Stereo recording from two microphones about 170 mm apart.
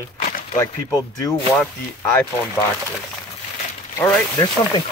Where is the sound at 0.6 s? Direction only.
20° left (ahead or behind).